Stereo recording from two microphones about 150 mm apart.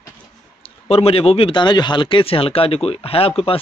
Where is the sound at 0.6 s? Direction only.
40° left (ahead or behind).